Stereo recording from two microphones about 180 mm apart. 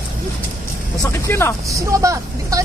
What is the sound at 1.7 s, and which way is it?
Speech, 15° right (ahead or behind).